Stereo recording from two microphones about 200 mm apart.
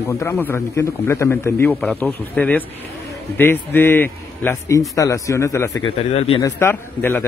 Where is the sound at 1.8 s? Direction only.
Centre (ahead or behind).